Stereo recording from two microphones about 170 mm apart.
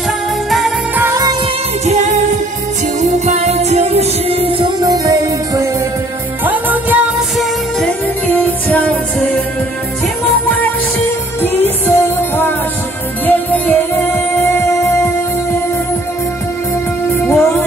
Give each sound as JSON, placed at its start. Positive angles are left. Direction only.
{"t": 0.5, "sound": "music", "side_deg": 0}
{"t": 0.9, "sound": "music", "side_deg": -15}
{"t": 1.9, "sound": "music", "side_deg": -45}
{"t": 4.8, "sound": "music", "side_deg": -20}
{"t": 6.4, "sound": "music", "side_deg": -10}
{"t": 8.3, "sound": "music", "side_deg": 10}
{"t": 11.4, "sound": "music", "side_deg": 10}
{"t": 17.2, "sound": "music", "side_deg": 10}